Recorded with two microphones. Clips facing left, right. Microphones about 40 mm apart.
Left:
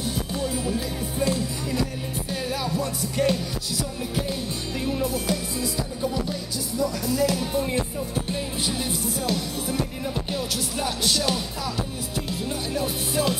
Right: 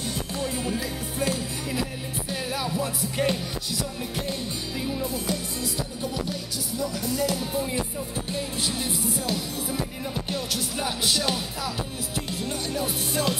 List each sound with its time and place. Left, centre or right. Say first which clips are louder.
0.7 s music: left 2 dB; centre
5.0 s music: left 3 dB; centre